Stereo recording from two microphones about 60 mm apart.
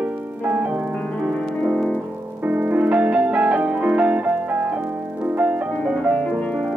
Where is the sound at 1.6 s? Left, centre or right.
Centre.